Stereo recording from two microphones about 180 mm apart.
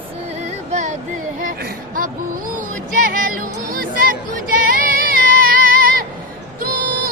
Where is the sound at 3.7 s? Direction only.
50° right (ahead or behind).